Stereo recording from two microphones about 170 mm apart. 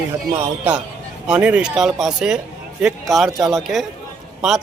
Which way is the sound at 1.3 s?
5° right (ahead or behind).